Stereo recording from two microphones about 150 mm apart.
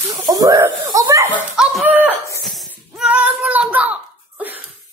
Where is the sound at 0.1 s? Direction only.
25° right (ahead or behind).